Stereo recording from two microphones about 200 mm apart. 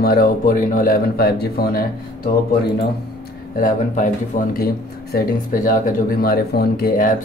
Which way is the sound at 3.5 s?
40° left (ahead or behind).